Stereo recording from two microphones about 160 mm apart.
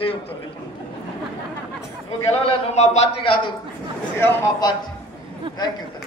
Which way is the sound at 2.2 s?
40° left (ahead or behind).